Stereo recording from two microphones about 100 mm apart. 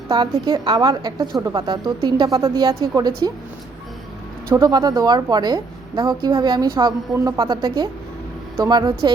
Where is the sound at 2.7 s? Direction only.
30° right (ahead or behind).